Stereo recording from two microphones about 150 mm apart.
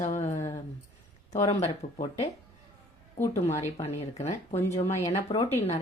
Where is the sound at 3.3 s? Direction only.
45° left (ahead or behind).